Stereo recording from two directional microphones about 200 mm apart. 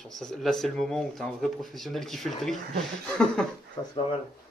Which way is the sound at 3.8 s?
15° left (ahead or behind).